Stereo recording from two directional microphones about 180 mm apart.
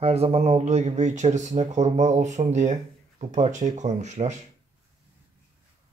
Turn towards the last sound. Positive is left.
turn(degrees=-40)  # may be behind; listen again after turning